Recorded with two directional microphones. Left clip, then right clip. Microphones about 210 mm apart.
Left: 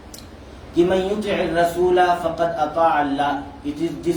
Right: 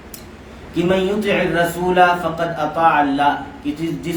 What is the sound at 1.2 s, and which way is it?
Speech, 20° right (ahead or behind).